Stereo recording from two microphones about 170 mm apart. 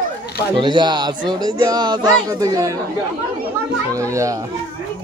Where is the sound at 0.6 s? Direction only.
25° right (ahead or behind).